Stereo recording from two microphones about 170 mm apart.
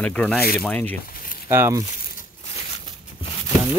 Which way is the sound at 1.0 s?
55° left (ahead or behind).